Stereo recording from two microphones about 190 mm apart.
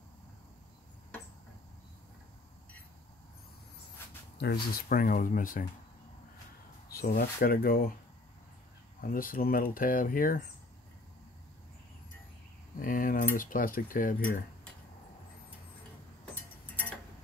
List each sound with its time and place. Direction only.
4.4 s speech: 55° left (ahead or behind)
6.9 s speech: 50° left (ahead or behind)
9.0 s speech: 50° left (ahead or behind)
12.7 s a sound: 45° left (ahead or behind)
13.4 s speech: 45° left (ahead or behind)